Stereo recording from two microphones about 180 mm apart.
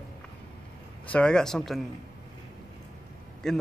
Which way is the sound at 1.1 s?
5° left (ahead or behind).